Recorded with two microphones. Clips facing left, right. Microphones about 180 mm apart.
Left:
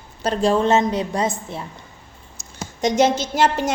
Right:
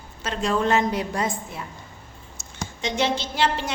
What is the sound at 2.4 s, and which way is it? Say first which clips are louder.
Speech: left 8 dB; 45° left (ahead or behind).